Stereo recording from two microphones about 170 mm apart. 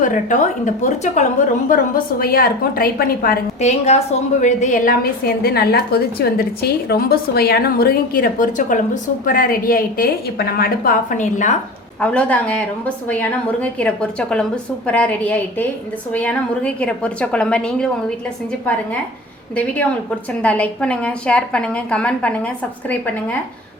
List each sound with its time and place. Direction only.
0.0 s a woman's voice: 50° left (ahead or behind)
1.7 s a woman's voice: 60° left (ahead or behind)
3.6 s a woman's voice: 40° left (ahead or behind)
11.9 s a woman's voice: 5° left (ahead or behind)
19.5 s a woman's voice: 10° left (ahead or behind)